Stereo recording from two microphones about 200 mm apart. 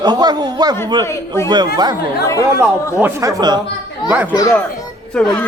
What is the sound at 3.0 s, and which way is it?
Speech, 10° right (ahead or behind).